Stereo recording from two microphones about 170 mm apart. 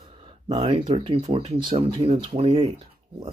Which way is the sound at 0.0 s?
30° right (ahead or behind).